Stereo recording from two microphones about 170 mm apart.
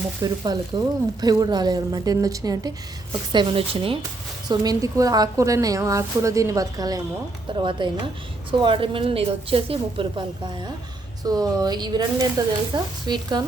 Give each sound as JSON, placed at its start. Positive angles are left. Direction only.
{"t": 0.2, "sound": "a woman's voice", "side_deg": -20}